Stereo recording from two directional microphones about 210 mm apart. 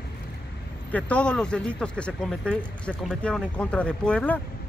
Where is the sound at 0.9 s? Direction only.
5° left (ahead or behind).